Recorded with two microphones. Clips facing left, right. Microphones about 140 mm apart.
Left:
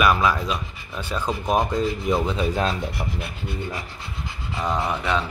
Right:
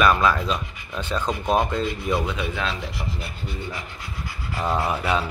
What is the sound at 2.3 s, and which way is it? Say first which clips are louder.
Speech: left 4 dB; 40° left (ahead or behind).